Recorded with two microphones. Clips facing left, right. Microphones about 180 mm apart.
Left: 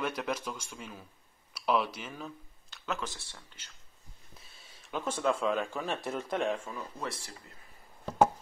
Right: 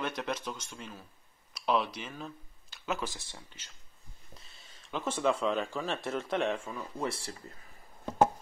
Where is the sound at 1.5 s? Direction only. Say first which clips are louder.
Even; 5° left (ahead or behind).